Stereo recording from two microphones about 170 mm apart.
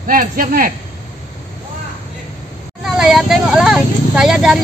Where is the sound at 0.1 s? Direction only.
55° right (ahead or behind).